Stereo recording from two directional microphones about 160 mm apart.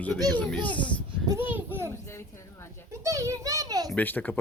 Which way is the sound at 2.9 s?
20° right (ahead or behind).